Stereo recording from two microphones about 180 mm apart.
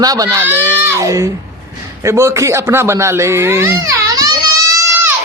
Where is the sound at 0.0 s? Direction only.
20° right (ahead or behind).